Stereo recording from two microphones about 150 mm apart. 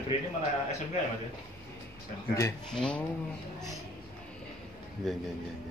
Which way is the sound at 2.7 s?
5° left (ahead or behind).